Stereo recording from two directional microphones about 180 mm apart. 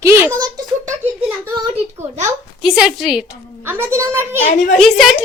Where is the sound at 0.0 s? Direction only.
15° right (ahead or behind).